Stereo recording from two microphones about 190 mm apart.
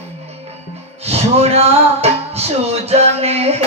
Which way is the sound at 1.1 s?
35° right (ahead or behind).